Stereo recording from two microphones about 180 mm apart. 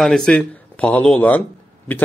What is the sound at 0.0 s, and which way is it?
Speech, 5° left (ahead or behind).